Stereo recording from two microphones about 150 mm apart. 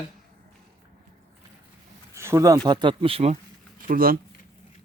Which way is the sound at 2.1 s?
20° right (ahead or behind).